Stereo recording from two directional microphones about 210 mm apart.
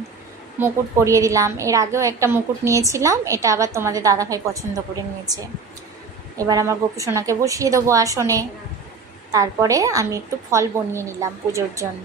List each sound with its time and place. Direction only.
0.6 s a woman's voice: 10° right (ahead or behind)
6.3 s a woman's voice: 15° right (ahead or behind)